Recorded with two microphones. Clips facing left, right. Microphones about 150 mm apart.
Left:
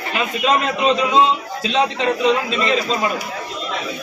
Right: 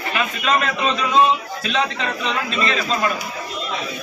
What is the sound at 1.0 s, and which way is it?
A man's voice, 25° left (ahead or behind).